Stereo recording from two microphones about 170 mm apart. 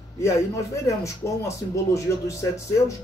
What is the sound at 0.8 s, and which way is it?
Music, 15° left (ahead or behind).